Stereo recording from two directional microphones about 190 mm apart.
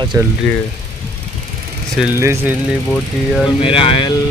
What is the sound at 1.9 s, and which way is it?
Speech, 10° right (ahead or behind).